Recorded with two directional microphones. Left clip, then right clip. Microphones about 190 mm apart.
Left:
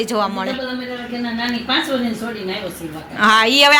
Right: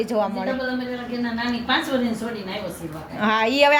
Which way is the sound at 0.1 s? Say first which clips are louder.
Left 3 dB; 5° right (ahead or behind).